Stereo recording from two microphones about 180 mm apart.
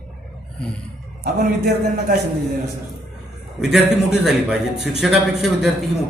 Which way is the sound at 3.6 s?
Centre (ahead or behind).